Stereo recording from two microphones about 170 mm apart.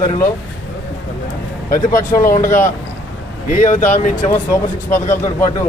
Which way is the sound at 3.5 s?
45° left (ahead or behind).